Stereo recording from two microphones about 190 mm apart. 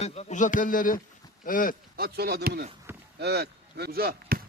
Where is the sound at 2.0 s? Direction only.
55° right (ahead or behind).